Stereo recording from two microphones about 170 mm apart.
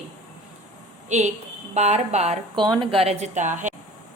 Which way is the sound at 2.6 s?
25° right (ahead or behind).